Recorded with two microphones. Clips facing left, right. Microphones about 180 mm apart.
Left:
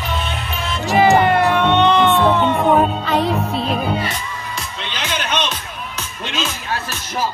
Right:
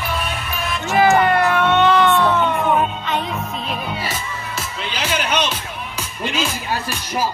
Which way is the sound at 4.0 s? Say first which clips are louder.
Left 2 dB; 5° right (ahead or behind).